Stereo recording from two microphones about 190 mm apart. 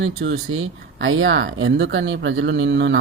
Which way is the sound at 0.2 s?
90° right.